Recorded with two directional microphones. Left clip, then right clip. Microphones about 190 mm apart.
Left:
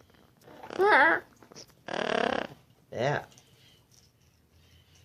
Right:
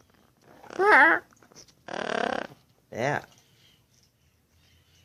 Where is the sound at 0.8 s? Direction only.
55° right (ahead or behind).